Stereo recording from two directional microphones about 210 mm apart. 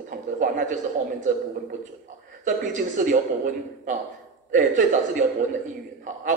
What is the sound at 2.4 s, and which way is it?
Speech, 40° right (ahead or behind).